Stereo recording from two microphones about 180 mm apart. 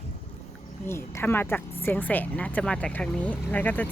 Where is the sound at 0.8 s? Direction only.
15° left (ahead or behind).